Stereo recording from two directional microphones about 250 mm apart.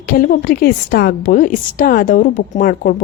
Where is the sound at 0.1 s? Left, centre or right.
Left.